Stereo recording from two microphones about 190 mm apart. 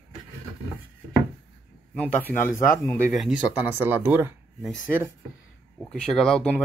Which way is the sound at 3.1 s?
Centre (ahead or behind).